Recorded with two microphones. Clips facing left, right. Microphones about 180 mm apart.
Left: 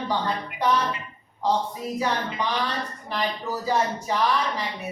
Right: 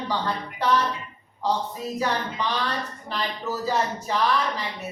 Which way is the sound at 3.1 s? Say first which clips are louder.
Left 1 dB; 15° left (ahead or behind).